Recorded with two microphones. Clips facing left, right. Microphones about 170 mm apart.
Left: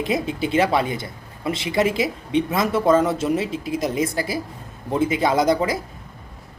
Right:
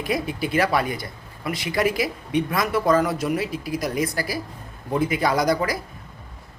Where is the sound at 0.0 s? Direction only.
25° left (ahead or behind).